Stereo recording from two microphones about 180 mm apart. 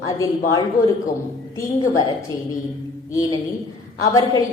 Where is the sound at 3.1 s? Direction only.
20° left (ahead or behind).